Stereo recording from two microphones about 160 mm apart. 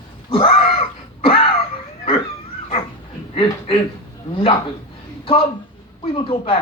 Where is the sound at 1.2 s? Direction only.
35° left (ahead or behind).